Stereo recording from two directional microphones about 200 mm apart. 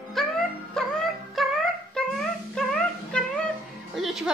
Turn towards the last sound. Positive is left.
turn(degrees=0)  # may be behind; listen again after turning